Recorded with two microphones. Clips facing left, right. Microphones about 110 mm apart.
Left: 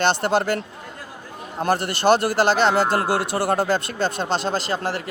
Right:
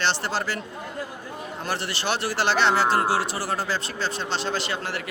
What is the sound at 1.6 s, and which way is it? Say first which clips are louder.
Speech: left 9 dB; 50° left (ahead or behind).